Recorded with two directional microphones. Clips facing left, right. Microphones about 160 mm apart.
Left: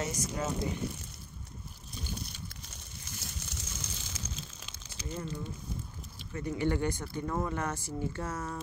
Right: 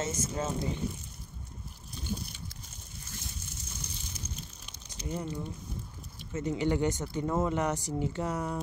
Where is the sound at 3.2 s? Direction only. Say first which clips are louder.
Left 1 dB; 85° left.